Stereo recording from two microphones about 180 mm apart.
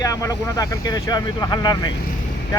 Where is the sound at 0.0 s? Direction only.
20° left (ahead or behind).